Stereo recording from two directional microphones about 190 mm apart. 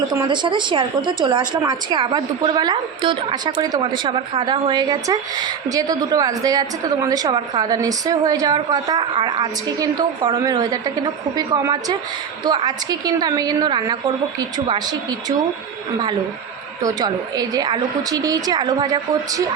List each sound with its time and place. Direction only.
0.1 s a woman's voice: 20° right (ahead or behind)
16.8 s a woman's voice: 20° right (ahead or behind)